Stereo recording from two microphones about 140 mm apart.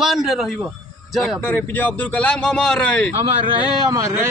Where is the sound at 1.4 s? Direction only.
15° left (ahead or behind).